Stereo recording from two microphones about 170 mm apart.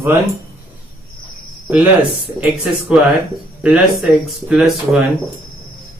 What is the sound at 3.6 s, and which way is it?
Speech, 5° right (ahead or behind).